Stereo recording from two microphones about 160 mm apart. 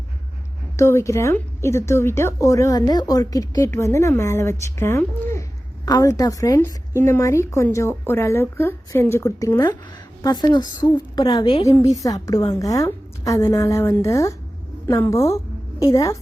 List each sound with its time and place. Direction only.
0.8 s a woman's voice: 15° left (ahead or behind)